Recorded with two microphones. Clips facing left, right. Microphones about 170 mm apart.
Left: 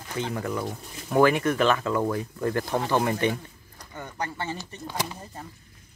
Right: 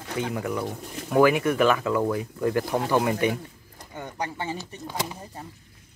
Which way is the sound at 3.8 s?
20° right (ahead or behind).